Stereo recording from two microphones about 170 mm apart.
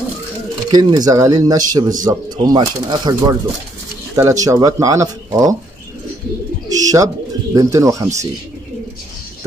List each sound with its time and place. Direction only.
0.7 s speech: 25° right (ahead or behind)
6.7 s speech: 20° right (ahead or behind)